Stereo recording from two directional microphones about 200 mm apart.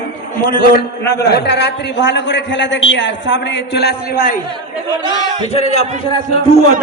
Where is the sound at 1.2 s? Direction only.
55° left (ahead or behind).